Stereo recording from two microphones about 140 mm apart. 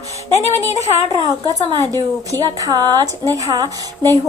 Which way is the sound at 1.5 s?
25° right (ahead or behind).